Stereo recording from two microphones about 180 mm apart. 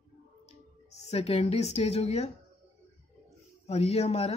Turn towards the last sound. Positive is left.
turn(degrees=35)  # may be behind; listen again after turning